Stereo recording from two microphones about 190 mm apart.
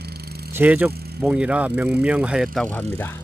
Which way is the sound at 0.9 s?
55° right (ahead or behind).